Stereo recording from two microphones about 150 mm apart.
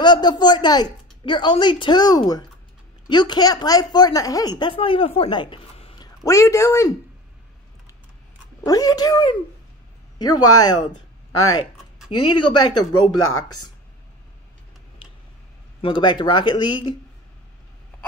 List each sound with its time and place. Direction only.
0.0 s speech: 30° left (ahead or behind)
6.2 s speech: 20° left (ahead or behind)
8.6 s speech: 25° left (ahead or behind)
12.4 s speech: 30° left (ahead or behind)
15.8 s speech: 30° left (ahead or behind)